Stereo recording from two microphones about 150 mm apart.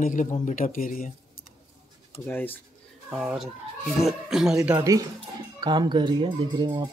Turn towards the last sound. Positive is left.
turn(degrees=-30)  # may be behind; listen again after turning